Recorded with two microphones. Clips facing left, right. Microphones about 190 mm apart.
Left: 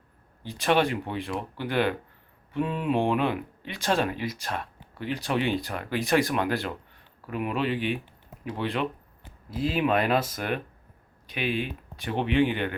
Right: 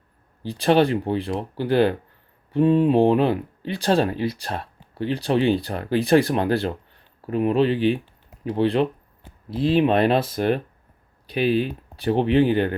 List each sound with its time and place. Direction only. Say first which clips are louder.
0.4 s speech: right 6 dB; 30° right (ahead or behind)